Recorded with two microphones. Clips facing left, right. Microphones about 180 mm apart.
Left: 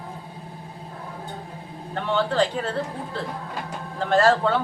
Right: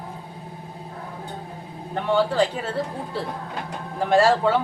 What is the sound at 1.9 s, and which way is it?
Speech, 10° right (ahead or behind).